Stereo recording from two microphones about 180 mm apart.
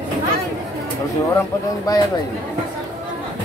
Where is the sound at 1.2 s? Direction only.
20° left (ahead or behind).